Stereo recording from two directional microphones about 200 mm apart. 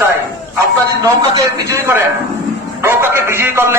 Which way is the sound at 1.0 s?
15° right (ahead or behind).